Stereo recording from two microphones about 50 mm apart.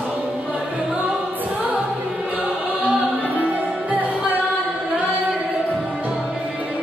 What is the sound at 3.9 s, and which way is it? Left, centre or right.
Music, right.